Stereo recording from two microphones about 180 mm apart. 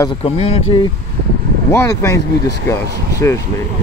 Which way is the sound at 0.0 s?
30° left (ahead or behind).